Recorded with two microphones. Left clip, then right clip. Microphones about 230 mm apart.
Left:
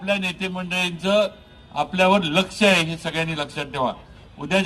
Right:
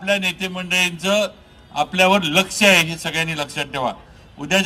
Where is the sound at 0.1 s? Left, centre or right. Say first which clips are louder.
Right 4 dB; right.